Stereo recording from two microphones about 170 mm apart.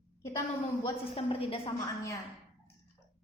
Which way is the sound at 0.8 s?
30° left (ahead or behind).